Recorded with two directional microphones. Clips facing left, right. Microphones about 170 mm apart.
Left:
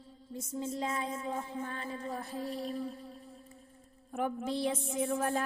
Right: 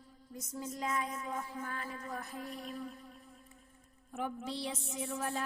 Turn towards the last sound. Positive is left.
turn(degrees=50)  # may be behind; listen again after turning